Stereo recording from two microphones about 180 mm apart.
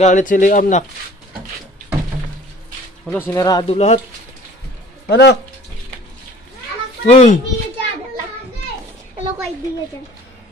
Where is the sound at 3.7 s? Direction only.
35° left (ahead or behind).